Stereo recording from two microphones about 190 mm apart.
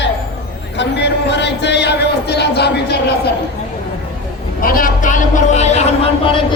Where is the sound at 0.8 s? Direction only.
65° left (ahead or behind).